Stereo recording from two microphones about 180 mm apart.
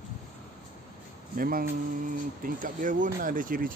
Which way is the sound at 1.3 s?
50° right (ahead or behind).